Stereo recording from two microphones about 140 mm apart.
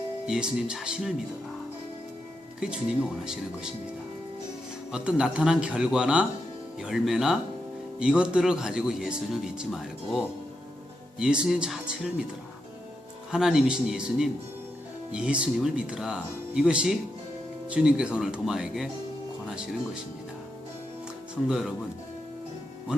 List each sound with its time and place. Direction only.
0.3 s speech: 5° right (ahead or behind)
2.6 s speech: 5° right (ahead or behind)
4.9 s speech: 5° right (ahead or behind)
13.3 s speech: 5° right (ahead or behind)
21.4 s speech: 5° right (ahead or behind)